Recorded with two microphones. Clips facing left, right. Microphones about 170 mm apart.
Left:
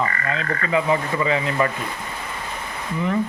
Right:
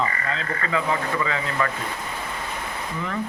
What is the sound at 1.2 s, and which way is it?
Speech, 20° left (ahead or behind).